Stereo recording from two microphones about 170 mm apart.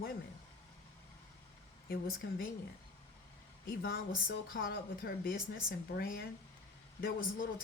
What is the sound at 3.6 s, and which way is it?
Speech, 65° left (ahead or behind).